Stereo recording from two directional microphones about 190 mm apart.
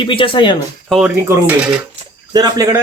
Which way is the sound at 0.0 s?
25° left (ahead or behind).